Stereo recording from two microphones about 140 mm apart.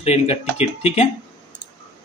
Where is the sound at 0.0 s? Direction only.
50° left (ahead or behind).